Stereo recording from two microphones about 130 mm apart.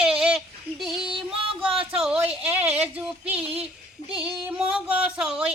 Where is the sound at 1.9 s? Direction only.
5° right (ahead or behind).